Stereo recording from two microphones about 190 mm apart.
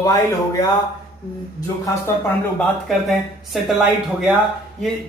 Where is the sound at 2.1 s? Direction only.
15° left (ahead or behind).